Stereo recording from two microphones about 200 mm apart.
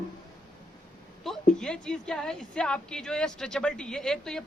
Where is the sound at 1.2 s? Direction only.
Centre (ahead or behind).